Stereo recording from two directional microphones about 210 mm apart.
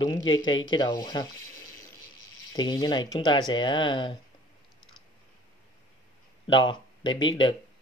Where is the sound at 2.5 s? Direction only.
20° left (ahead or behind).